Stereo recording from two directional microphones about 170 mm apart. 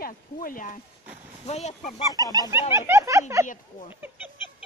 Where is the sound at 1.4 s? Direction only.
40° left (ahead or behind).